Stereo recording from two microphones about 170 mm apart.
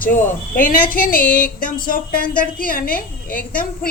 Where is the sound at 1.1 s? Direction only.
10° left (ahead or behind).